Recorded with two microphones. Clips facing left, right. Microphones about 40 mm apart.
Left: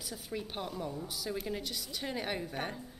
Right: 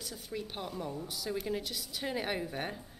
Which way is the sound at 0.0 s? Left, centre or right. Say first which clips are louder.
Even; centre.